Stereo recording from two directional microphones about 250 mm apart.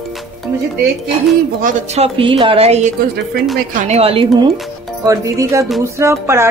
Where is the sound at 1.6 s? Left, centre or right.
Right.